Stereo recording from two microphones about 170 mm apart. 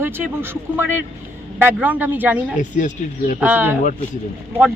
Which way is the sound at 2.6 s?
45° left (ahead or behind).